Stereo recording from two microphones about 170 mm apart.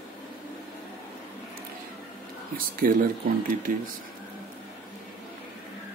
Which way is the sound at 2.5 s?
55° right (ahead or behind).